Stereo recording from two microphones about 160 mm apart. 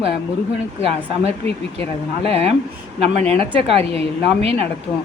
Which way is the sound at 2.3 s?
40° right (ahead or behind).